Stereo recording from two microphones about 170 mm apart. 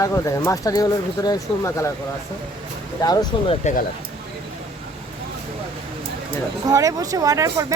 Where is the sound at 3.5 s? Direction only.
45° left (ahead or behind).